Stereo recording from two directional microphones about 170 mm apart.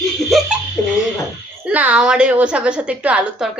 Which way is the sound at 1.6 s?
10° right (ahead or behind).